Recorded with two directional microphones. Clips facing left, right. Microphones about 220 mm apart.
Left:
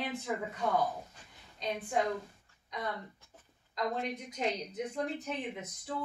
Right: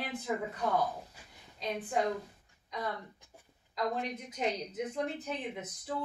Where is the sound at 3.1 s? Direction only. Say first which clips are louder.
Right 2 dB; 15° right (ahead or behind).